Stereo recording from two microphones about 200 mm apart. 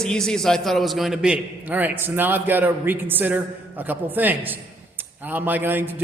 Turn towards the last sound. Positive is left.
turn(degrees=-10)  # may be behind; listen again after turning